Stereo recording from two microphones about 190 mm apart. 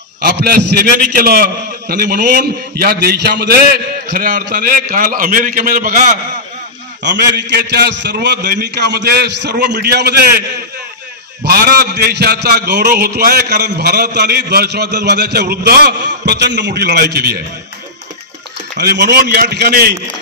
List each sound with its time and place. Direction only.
0.2 s a man's voice: 55° right (ahead or behind)
7.0 s a man's voice: 65° right (ahead or behind)
11.4 s a man's voice: 55° right (ahead or behind)
18.8 s a man's voice: 60° right (ahead or behind)